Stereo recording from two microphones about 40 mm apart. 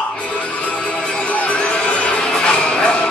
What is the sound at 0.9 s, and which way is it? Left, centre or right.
Music, left.